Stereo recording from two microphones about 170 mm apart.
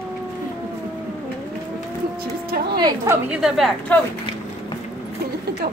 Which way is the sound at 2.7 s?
20° right (ahead or behind).